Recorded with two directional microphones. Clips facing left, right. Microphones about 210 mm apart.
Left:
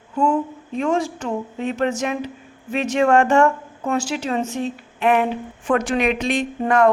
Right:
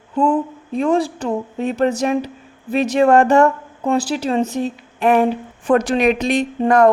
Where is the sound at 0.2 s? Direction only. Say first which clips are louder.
Right 3 dB; 35° right (ahead or behind).